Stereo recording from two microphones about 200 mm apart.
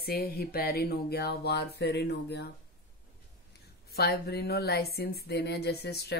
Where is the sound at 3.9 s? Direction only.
55° left (ahead or behind).